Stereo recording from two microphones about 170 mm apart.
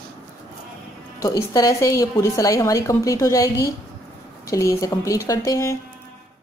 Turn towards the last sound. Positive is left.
turn(degrees=20)  # may be behind; listen again after turning